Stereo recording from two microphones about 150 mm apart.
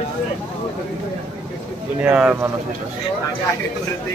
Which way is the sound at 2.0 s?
10° right (ahead or behind).